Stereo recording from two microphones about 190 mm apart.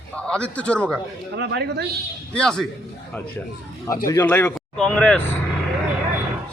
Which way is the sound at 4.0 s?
20° left (ahead or behind).